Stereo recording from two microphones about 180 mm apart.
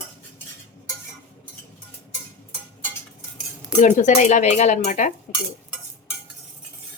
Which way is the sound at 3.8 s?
45° left (ahead or behind).